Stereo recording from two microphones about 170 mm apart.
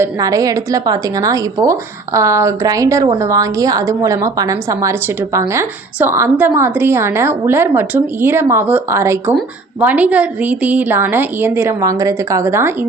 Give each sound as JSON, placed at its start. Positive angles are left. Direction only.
{"t": 0.0, "sound": "a woman's voice", "side_deg": -20}